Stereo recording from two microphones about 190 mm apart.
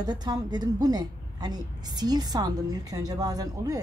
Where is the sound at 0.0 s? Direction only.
20° right (ahead or behind).